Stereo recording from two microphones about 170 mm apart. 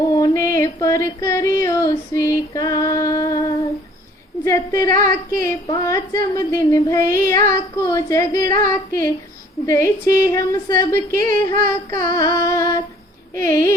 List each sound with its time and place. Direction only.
0.0 s a sound: 20° left (ahead or behind)
4.4 s a woman's voice: 15° left (ahead or behind)
12.1 s music: 20° left (ahead or behind)
13.3 s speech: 15° left (ahead or behind)